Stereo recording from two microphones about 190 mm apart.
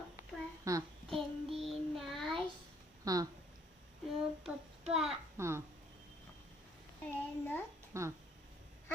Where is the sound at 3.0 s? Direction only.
20° right (ahead or behind).